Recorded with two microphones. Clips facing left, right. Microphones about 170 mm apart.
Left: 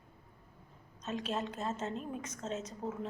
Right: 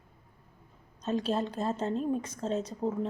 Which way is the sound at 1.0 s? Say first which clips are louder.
Right 7 dB; 35° right (ahead or behind).